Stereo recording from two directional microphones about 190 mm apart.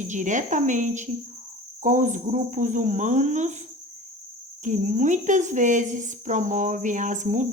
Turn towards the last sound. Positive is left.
turn(degrees=-40)  # may be behind; listen again after turning